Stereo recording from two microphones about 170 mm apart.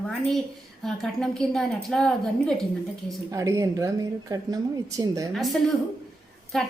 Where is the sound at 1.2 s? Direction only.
5° left (ahead or behind).